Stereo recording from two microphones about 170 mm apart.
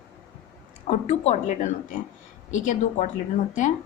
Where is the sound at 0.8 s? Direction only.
40° left (ahead or behind).